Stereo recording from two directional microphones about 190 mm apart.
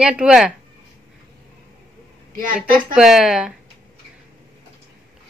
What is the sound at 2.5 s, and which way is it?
Speech, 5° right (ahead or behind).